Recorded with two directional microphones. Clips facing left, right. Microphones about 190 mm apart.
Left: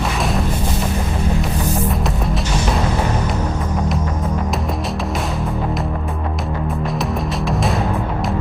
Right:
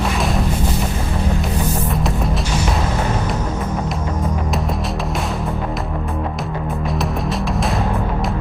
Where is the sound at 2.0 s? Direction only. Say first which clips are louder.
Even; centre (ahead or behind).